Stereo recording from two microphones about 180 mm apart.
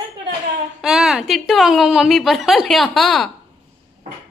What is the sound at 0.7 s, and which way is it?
A woman's voice, centre (ahead or behind).